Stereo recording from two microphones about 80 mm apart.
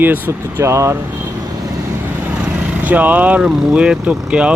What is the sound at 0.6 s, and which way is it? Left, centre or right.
Speech, right.